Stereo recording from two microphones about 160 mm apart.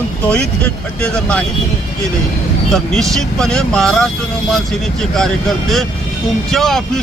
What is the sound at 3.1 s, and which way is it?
Speech, 5° left (ahead or behind).